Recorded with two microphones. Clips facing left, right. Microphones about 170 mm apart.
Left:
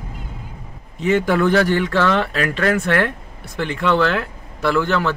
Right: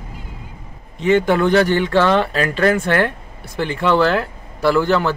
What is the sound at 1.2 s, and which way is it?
Speech, 25° right (ahead or behind).